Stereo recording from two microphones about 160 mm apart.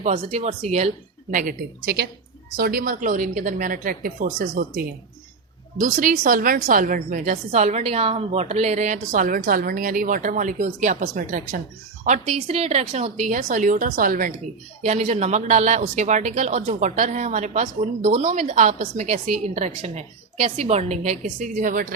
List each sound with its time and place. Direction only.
0.3 s a woman's voice: 40° right (ahead or behind); by 14.3 s 60° right (ahead or behind)
14.8 s speech: 45° right (ahead or behind)